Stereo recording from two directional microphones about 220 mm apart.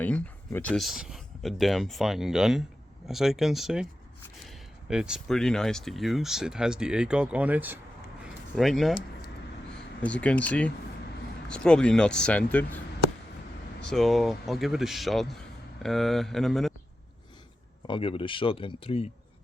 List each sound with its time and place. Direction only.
0.0 s speech: 5° left (ahead or behind)
8.2 s a sound: centre (ahead or behind)
10.0 s speech: 5° left (ahead or behind)
13.8 s speech: centre (ahead or behind)
17.8 s speech: 25° left (ahead or behind)